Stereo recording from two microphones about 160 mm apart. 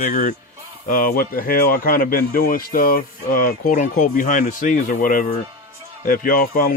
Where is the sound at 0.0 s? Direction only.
55° left (ahead or behind).